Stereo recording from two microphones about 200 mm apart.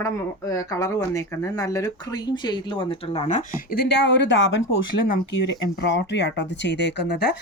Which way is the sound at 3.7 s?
60° left (ahead or behind).